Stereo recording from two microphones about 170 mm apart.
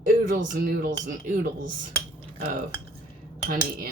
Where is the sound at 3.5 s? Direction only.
60° right (ahead or behind).